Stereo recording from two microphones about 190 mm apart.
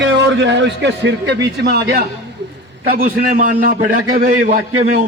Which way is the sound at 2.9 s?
45° right (ahead or behind).